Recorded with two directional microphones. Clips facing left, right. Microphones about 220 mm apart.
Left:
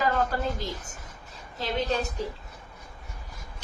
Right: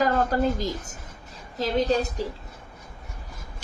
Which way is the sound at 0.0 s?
40° right (ahead or behind).